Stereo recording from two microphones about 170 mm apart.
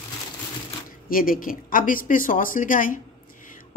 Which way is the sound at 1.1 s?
55° left (ahead or behind).